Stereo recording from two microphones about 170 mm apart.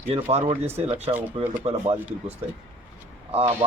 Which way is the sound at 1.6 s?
35° right (ahead or behind).